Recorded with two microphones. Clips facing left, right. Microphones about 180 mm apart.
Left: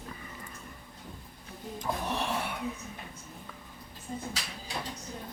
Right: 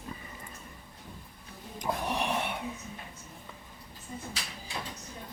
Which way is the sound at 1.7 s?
15° right (ahead or behind).